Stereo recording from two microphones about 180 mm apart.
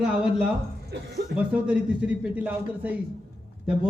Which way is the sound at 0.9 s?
70° right (ahead or behind).